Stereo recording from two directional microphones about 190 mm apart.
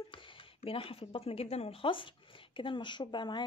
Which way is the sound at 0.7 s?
30° left (ahead or behind).